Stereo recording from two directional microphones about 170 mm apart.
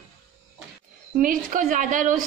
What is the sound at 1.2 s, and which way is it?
A woman's voice, 55° right (ahead or behind).